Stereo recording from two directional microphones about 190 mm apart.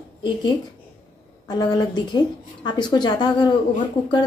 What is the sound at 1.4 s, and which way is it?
A woman's voice, 20° left (ahead or behind).